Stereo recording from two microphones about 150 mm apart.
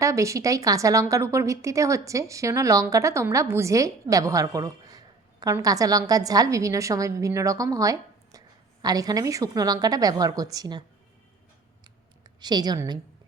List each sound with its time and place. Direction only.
0.0 s a woman's voice: 20° right (ahead or behind)
12.4 s a woman's voice: 30° right (ahead or behind)